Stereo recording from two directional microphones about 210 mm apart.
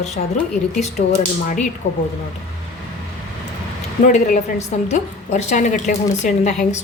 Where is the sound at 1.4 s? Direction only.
35° left (ahead or behind).